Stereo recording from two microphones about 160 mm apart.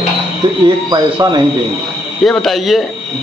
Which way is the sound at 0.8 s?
25° right (ahead or behind).